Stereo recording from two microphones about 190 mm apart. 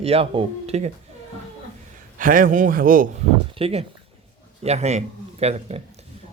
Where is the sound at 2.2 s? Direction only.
45° right (ahead or behind).